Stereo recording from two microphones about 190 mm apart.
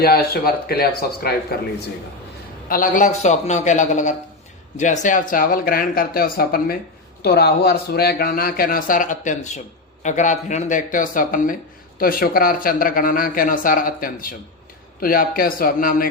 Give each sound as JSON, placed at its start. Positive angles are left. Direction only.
{"t": 0.0, "sound": "speech", "side_deg": 55}
{"t": 2.6, "sound": "a man's voice", "side_deg": 45}